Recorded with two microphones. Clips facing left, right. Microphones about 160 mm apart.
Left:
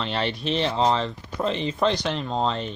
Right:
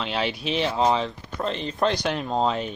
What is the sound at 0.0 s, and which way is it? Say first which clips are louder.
Speech: even; 5° right (ahead or behind).